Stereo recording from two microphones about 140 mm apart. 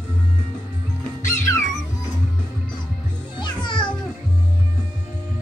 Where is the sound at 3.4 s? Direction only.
35° left (ahead or behind).